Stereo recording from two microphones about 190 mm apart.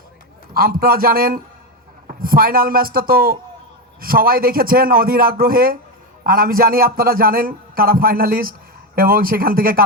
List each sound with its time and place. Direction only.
0.5 s a man's voice: 50° right (ahead or behind)